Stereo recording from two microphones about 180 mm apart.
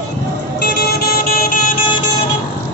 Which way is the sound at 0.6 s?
60° left (ahead or behind).